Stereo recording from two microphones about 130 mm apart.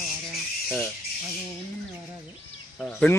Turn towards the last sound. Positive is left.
turn(degrees=10)  # may be behind; listen again after turning